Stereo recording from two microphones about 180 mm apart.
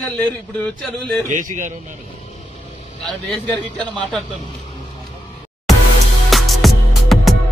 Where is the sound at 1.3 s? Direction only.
45° right (ahead or behind).